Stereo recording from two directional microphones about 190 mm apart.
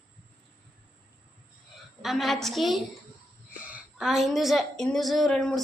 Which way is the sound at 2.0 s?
Centre (ahead or behind).